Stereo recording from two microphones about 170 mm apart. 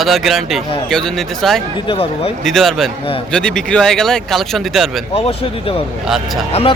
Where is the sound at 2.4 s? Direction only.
Centre (ahead or behind).